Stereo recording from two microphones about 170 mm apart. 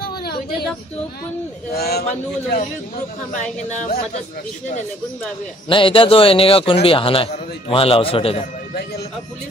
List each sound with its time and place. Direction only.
0.2 s a sound: 70° left (ahead or behind)
1.8 s a man's voice: 70° left (ahead or behind)
2.0 s a man's voice: 45° left (ahead or behind)
5.7 s a man's voice: 30° left (ahead or behind)